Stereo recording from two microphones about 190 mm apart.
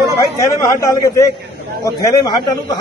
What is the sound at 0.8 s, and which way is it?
A man's voice, 15° left (ahead or behind).